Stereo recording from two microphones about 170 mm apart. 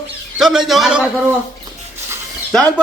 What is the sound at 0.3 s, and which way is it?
Speech, centre (ahead or behind).